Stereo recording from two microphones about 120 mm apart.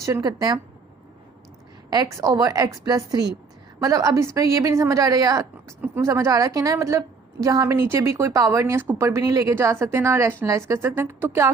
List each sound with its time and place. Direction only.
0.0 s a woman's voice: 30° right (ahead or behind)
1.9 s a woman's voice: 30° right (ahead or behind)